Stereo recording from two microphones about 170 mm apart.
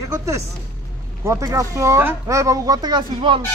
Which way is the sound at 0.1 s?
20° right (ahead or behind).